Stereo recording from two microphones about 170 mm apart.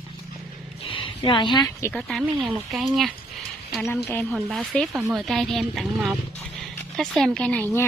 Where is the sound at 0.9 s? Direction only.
30° left (ahead or behind).